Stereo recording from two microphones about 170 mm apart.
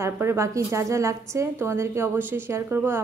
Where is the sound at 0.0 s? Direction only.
15° right (ahead or behind).